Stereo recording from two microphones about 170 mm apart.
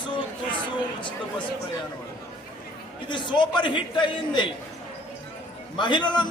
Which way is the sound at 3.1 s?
25° left (ahead or behind).